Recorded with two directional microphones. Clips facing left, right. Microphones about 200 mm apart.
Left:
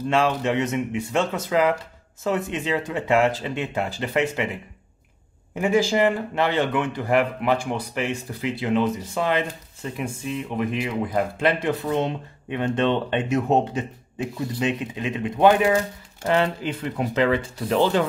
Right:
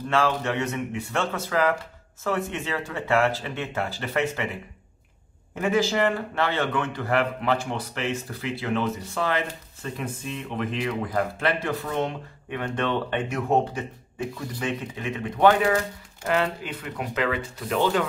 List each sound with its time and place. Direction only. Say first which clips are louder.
0.1 s speech: left 2 dB; 15° left (ahead or behind)
5.5 s speech: left 3 dB; 15° left (ahead or behind); by 18.0 s 30° left (ahead or behind)